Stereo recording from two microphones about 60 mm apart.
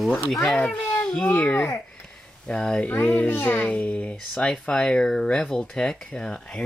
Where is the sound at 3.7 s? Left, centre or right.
Left.